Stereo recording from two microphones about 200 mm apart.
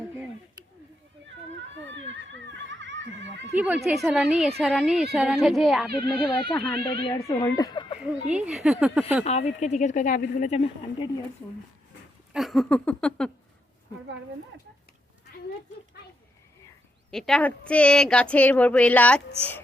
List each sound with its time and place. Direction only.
1.3 s children playing: 65° right (ahead or behind)
3.5 s speech: 10° right (ahead or behind)
6.1 s speech: 25° left (ahead or behind)
8.3 s speech: 5° right (ahead or behind)
9.2 s speech: 30° left (ahead or behind)
12.3 s speech: centre (ahead or behind)
17.1 s speech: centre (ahead or behind)